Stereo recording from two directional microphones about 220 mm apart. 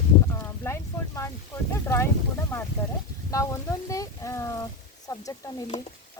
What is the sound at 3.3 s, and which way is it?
Speech, 15° left (ahead or behind).